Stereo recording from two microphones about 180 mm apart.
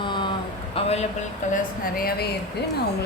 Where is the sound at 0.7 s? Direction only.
35° left (ahead or behind).